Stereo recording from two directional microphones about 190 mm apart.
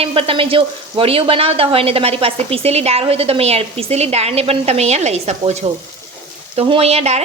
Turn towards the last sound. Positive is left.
turn(degrees=-35)  # may be behind; listen again after turning